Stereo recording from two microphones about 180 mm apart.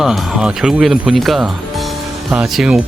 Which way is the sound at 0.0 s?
Centre (ahead or behind).